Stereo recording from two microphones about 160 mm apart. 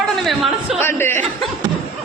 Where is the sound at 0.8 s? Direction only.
15° left (ahead or behind).